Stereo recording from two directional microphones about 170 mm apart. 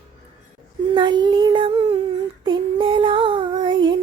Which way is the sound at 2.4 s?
30° right (ahead or behind).